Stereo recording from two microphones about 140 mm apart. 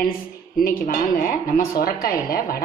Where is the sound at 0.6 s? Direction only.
85° left.